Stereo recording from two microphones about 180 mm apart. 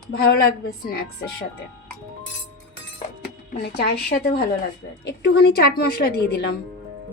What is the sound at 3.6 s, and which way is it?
A woman's voice, 65° left (ahead or behind).